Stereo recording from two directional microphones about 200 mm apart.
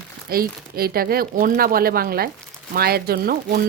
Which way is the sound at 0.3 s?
50° right (ahead or behind).